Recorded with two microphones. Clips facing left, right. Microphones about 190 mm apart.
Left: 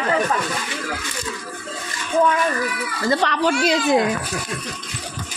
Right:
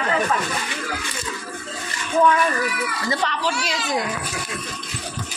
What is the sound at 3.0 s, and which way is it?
Speech, 55° left (ahead or behind).